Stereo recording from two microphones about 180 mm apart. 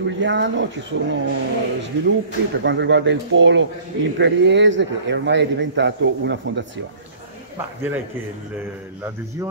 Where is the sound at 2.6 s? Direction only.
80° right.